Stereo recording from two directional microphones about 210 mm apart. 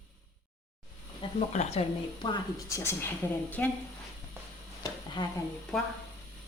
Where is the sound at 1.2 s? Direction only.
25° left (ahead or behind); by 3.7 s 5° left (ahead or behind).